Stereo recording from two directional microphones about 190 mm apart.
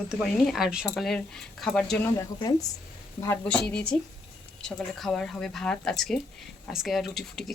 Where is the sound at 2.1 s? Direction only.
20° left (ahead or behind).